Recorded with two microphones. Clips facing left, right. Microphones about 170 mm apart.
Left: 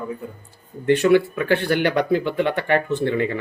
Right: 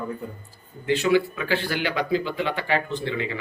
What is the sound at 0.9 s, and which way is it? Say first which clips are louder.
Speech: left 5 dB; 55° left (ahead or behind).